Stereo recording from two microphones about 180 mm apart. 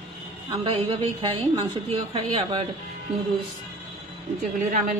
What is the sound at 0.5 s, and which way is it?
A woman's voice, 30° right (ahead or behind).